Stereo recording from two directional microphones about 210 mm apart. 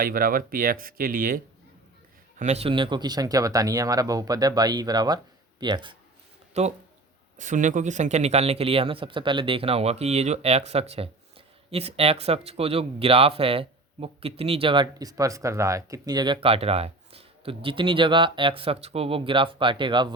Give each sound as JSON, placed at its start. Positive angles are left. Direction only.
{"t": 0.0, "sound": "speech", "side_deg": -45}
{"t": 2.4, "sound": "speech", "side_deg": -30}